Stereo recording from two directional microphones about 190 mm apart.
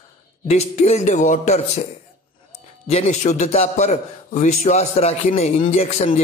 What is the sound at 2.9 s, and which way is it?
A man's voice, 35° left (ahead or behind).